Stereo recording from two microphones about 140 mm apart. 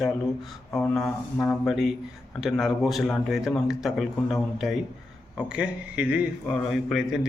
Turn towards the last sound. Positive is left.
turn(degrees=0)  # may be behind; listen again after turning